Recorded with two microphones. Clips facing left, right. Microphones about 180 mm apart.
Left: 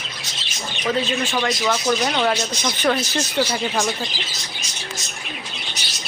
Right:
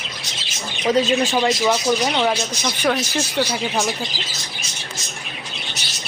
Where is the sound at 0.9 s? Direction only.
40° right (ahead or behind).